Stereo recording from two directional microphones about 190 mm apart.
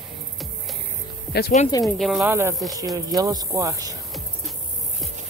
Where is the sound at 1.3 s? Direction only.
60° left (ahead or behind).